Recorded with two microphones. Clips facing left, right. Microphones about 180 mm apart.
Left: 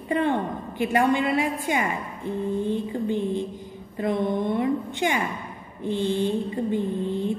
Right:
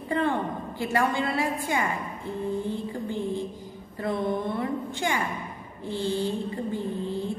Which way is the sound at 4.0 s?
20° left (ahead or behind).